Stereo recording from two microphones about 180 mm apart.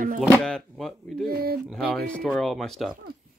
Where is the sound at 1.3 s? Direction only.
55° right (ahead or behind).